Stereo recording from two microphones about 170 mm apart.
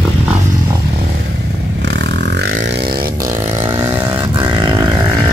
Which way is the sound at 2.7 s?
70° right (ahead or behind).